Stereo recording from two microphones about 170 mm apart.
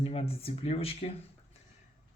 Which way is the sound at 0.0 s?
35° left (ahead or behind).